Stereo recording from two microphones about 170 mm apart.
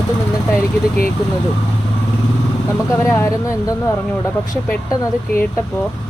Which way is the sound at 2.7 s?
15° left (ahead or behind).